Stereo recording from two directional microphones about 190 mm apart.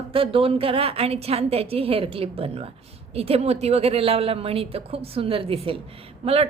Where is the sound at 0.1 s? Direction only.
30° right (ahead or behind).